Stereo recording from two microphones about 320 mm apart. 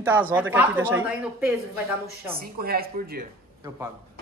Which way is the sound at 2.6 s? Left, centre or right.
Right.